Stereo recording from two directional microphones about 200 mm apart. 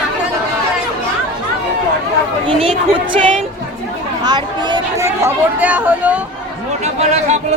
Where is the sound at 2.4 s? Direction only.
25° right (ahead or behind).